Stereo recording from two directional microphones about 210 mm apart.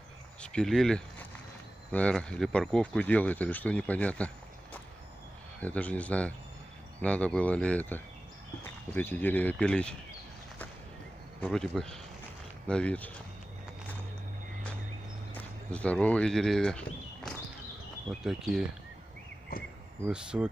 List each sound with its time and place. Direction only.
0.4 s speech: 5° left (ahead or behind)
5.6 s speech: 5° left (ahead or behind)
11.4 s speech: 5° left (ahead or behind)
15.3 s speech: 5° left (ahead or behind)
19.5 s speech: 45° left (ahead or behind)
20.1 s speech: 5° right (ahead or behind)